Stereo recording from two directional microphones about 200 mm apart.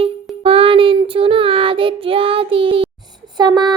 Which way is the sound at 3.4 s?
20° right (ahead or behind).